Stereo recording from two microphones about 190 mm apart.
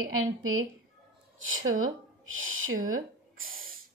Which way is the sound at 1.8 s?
90° right.